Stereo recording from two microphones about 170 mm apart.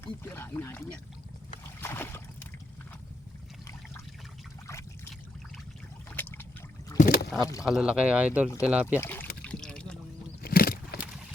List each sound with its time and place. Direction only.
0.0 s speech: 15° left (ahead or behind)
1.8 s a sound: 15° left (ahead or behind)
4.6 s trickle: 15° left (ahead or behind)
6.1 s a sound: 10° left (ahead or behind)
7.0 s rowboat: 60° left (ahead or behind)
7.6 s speech: 5° right (ahead or behind)
9.0 s speech: 10° left (ahead or behind)
9.4 s liquid: 5° left (ahead or behind)
10.4 s horse: 60° left (ahead or behind)